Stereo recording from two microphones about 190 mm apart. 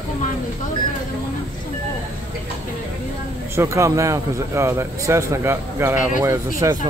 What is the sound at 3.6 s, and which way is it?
Speech, 15° right (ahead or behind).